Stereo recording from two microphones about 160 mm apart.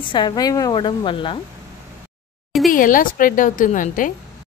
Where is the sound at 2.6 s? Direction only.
60° left (ahead or behind).